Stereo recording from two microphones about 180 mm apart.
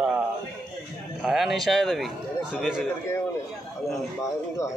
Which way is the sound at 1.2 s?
Centre (ahead or behind).